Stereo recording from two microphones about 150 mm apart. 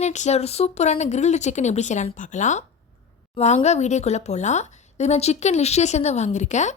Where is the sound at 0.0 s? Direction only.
50° left (ahead or behind).